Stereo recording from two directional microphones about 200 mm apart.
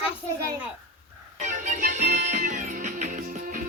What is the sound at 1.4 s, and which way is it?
Music, 35° right (ahead or behind).